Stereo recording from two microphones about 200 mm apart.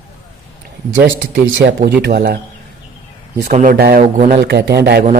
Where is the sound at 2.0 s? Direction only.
50° right (ahead or behind).